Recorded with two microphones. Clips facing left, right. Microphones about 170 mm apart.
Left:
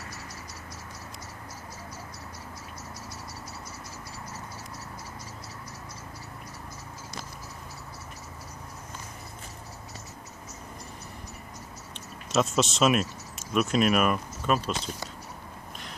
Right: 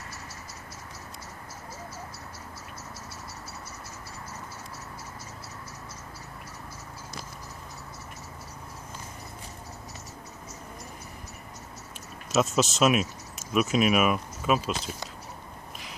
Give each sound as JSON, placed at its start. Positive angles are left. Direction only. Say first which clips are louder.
{"t": 12.3, "sound": "speech", "louder": "right 1 dB", "side_deg": 0}